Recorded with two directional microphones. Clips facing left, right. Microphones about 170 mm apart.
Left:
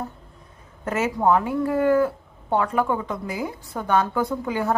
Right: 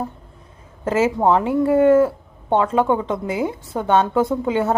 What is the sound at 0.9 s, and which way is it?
Speech, 30° right (ahead or behind).